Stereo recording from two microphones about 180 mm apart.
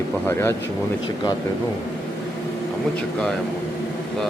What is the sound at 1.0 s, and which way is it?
Speech, 25° left (ahead or behind).